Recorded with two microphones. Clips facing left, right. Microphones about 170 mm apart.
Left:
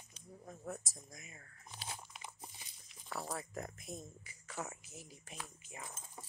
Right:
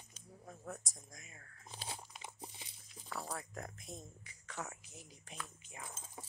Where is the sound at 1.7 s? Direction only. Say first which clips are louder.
Right 1 dB; 30° right (ahead or behind).